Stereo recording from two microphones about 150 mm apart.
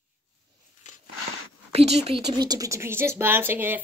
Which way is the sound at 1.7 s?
45° right (ahead or behind).